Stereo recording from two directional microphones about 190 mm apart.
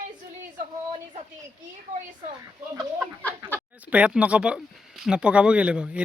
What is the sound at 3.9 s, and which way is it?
Speech, 5° right (ahead or behind).